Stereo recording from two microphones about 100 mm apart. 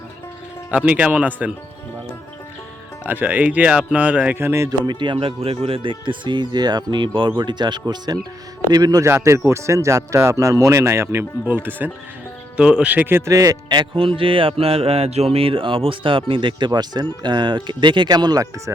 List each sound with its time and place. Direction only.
0.7 s speech: 15° right (ahead or behind)
3.0 s speech: 15° right (ahead or behind)
4.9 s speech: 50° right (ahead or behind)
9.0 s speech: 25° right (ahead or behind)
13.3 s speech: 35° right (ahead or behind)
13.9 s speech: 65° right (ahead or behind); by 18.7 s 40° right (ahead or behind)